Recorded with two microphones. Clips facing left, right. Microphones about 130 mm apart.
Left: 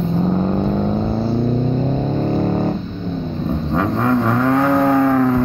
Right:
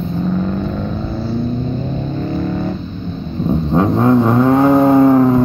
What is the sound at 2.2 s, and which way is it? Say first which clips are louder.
Music: even; 35° left (ahead or behind).